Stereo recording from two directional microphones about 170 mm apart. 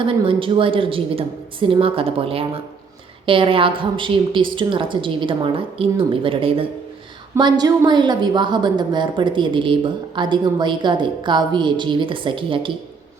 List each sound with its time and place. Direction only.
0.0 s a woman's voice: 30° right (ahead or behind)